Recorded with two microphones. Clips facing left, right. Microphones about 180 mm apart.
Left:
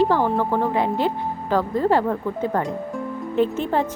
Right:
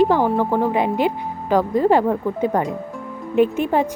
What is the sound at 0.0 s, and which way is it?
Speech, 15° right (ahead or behind).